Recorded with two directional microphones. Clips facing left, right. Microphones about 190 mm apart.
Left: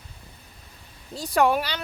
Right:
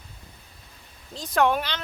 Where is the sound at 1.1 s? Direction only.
10° left (ahead or behind).